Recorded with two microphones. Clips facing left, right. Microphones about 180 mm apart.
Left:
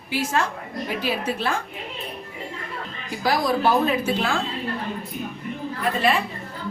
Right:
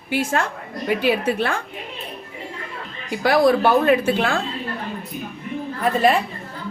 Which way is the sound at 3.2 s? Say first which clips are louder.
Right 6 dB; 60° right (ahead or behind).